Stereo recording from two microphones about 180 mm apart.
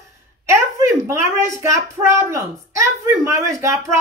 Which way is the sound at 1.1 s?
15° right (ahead or behind).